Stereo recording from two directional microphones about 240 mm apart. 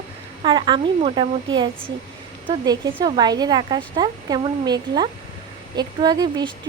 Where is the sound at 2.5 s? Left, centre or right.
Centre.